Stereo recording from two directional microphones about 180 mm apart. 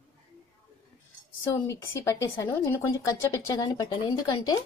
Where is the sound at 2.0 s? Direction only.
15° left (ahead or behind).